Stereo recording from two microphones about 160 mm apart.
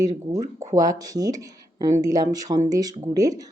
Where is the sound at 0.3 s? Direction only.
40° right (ahead or behind).